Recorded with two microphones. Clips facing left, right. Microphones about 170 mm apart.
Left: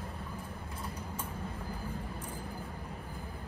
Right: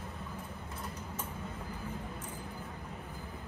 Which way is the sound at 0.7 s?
10° left (ahead or behind).